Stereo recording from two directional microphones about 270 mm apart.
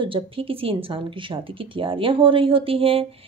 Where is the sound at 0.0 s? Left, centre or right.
Centre.